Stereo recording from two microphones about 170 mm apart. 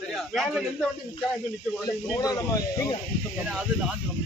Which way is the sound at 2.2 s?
20° left (ahead or behind).